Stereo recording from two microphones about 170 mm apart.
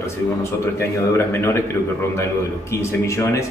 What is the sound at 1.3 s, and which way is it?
A man's voice, 15° left (ahead or behind).